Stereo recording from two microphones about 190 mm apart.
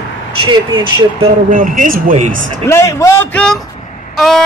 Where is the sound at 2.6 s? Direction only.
15° left (ahead or behind).